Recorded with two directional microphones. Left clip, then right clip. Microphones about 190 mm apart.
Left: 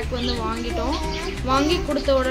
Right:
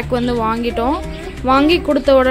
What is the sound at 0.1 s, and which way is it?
A woman's voice, 45° right (ahead or behind).